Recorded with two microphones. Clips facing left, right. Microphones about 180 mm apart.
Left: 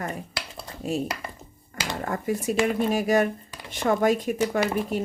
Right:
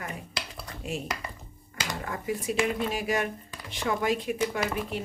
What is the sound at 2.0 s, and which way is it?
Speech, 45° left (ahead or behind).